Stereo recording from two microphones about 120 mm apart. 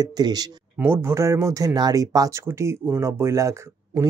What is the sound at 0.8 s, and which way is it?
Speech, 20° right (ahead or behind).